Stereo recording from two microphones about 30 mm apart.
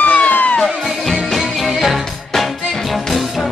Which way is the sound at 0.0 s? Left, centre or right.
Left.